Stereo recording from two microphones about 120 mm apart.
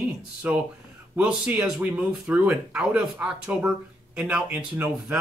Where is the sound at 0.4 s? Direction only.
15° right (ahead or behind).